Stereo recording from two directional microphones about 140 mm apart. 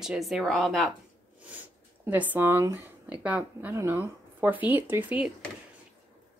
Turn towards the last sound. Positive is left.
turn(degrees=-10)  # may be behind; listen again after turning